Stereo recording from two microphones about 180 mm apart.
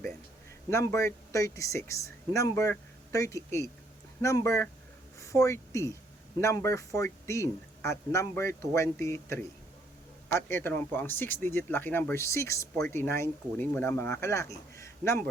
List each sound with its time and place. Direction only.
0.7 s speech: 15° left (ahead or behind)